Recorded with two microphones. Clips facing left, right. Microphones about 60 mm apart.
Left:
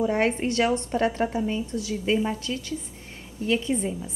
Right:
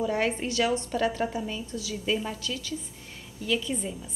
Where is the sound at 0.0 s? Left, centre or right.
Left.